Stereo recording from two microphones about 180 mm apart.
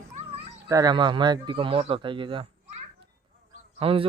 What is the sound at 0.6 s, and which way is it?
A man's voice, 20° right (ahead or behind).